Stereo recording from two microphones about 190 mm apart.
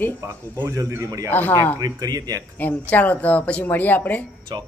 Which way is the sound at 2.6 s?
10° left (ahead or behind).